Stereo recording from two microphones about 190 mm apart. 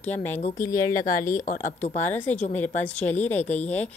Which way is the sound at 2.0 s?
10° left (ahead or behind).